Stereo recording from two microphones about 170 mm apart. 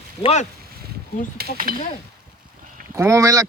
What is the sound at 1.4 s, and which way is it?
Speech, 55° right (ahead or behind).